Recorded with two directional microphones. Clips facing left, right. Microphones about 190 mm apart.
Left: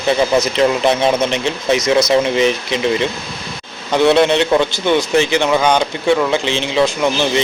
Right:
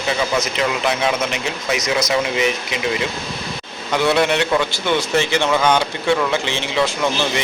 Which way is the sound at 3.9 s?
20° left (ahead or behind).